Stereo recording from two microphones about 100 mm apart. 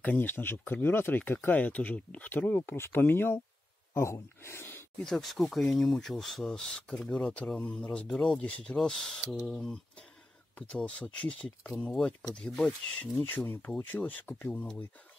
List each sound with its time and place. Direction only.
0.0 s speech: 15° left (ahead or behind)
5.0 s speech: centre (ahead or behind)
11.2 s speech: 5° left (ahead or behind)